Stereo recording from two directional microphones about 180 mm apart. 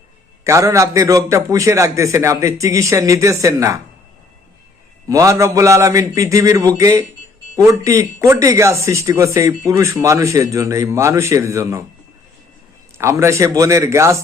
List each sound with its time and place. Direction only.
0.4 s speech: 15° right (ahead or behind)
5.0 s speech: 20° right (ahead or behind)
13.0 s speech: 15° right (ahead or behind)